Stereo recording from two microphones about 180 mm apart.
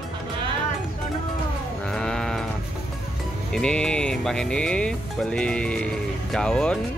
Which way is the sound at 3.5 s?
5° left (ahead or behind).